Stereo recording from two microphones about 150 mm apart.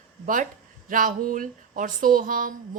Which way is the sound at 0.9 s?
65° right (ahead or behind).